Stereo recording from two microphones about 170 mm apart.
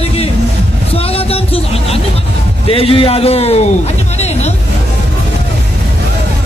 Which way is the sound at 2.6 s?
35° left (ahead or behind).